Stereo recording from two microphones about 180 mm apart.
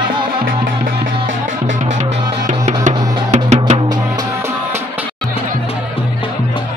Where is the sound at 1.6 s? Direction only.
45° right (ahead or behind).